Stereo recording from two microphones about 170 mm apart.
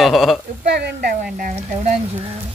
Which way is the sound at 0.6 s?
70° right (ahead or behind).